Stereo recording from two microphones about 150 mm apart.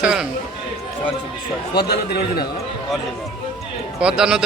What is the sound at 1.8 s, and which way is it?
Speech, 90° left.